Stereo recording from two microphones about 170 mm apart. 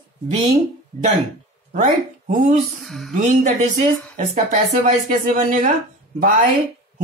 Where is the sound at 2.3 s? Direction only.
45° right (ahead or behind).